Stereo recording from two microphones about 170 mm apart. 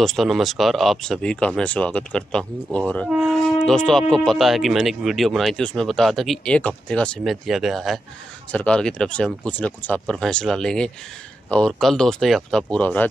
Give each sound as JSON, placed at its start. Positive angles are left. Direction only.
{"t": 0.0, "sound": "speech", "side_deg": 0}